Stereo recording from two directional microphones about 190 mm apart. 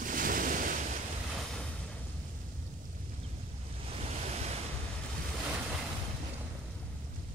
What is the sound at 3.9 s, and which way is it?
Waves, 35° right (ahead or behind).